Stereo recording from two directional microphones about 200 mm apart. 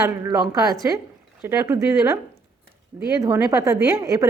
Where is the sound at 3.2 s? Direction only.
15° right (ahead or behind).